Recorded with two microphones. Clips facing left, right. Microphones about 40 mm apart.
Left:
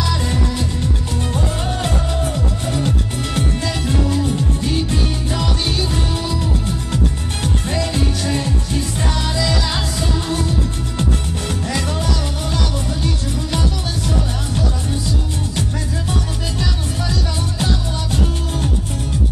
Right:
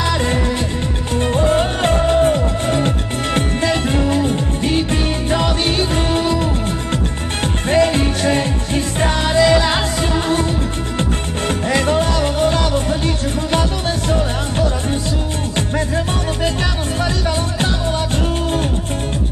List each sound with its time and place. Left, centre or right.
0.0 s music: right
18.1 s music: right